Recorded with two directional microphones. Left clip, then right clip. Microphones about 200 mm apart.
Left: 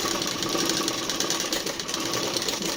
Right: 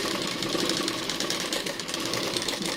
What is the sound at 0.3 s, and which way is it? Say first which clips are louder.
Sewing machine: left 2 dB; 5° right (ahead or behind).